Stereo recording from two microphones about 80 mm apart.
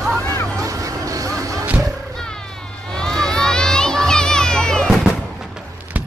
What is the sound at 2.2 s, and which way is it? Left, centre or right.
Crowd, centre.